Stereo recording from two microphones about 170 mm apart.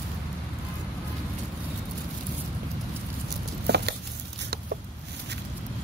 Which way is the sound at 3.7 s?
75° right (ahead or behind).